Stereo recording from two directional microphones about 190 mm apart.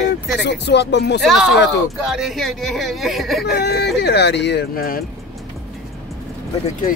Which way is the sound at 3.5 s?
60° left (ahead or behind).